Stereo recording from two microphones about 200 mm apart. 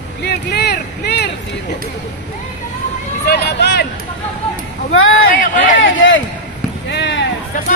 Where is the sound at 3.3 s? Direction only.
55° left (ahead or behind).